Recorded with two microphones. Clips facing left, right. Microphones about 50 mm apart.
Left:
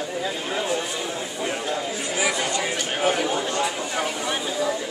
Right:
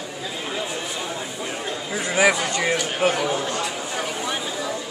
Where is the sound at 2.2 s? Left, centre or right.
Right.